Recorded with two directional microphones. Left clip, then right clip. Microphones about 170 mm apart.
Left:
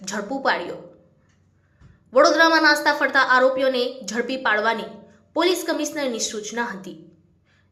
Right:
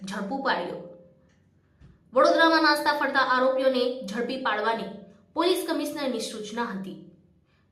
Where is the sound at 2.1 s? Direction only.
20° left (ahead or behind).